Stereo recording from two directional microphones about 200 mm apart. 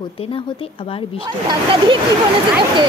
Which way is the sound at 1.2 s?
20° right (ahead or behind).